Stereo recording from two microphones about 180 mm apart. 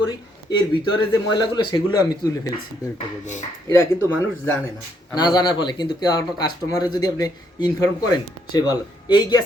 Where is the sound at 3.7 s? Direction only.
15° left (ahead or behind).